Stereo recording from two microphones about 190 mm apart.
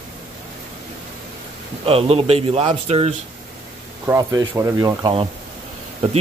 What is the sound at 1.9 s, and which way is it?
A man's voice, 30° right (ahead or behind).